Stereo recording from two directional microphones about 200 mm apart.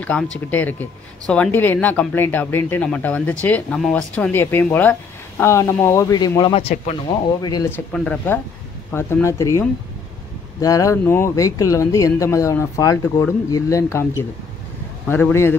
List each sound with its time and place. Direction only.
0.0 s speech: 5° left (ahead or behind); by 7.0 s 30° left (ahead or behind)
7.4 s speech: 15° left (ahead or behind)